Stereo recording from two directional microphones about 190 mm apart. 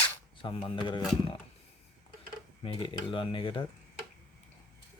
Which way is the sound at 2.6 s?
25° left (ahead or behind).